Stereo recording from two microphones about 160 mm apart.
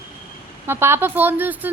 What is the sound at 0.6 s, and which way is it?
A woman's voice, 15° right (ahead or behind).